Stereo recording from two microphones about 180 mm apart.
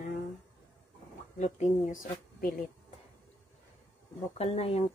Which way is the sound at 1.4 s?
40° left (ahead or behind).